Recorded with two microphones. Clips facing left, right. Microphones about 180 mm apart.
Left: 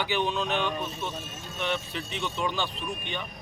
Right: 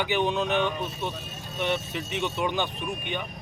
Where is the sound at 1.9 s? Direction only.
20° right (ahead or behind).